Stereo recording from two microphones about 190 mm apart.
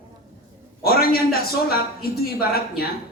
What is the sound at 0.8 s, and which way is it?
A man's voice, 55° left (ahead or behind).